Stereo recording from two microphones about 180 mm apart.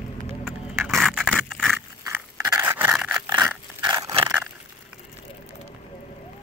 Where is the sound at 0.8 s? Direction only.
Centre (ahead or behind).